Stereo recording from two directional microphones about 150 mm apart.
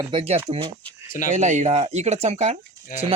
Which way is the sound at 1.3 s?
55° right (ahead or behind).